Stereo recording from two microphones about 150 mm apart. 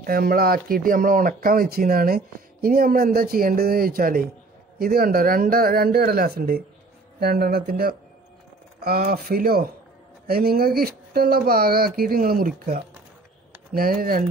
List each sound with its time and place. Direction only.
0.0 s speech: 75° right (ahead or behind)
4.7 s speech: 90° right; by 14.3 s 70° right (ahead or behind)